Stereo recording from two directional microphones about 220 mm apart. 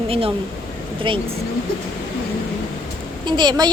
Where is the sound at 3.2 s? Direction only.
20° right (ahead or behind).